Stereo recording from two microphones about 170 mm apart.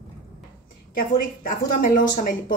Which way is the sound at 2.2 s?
55° left (ahead or behind).